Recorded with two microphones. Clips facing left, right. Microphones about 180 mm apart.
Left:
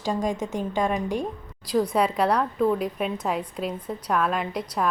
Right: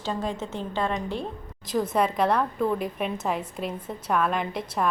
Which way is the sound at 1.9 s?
Centre (ahead or behind).